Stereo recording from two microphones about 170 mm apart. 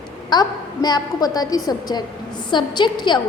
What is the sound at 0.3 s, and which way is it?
A woman's voice, 25° left (ahead or behind).